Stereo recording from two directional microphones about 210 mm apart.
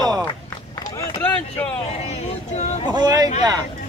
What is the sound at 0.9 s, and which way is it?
Speech, 10° left (ahead or behind).